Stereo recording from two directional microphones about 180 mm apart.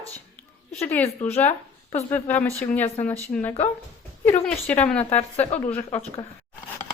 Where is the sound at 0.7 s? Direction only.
10° left (ahead or behind).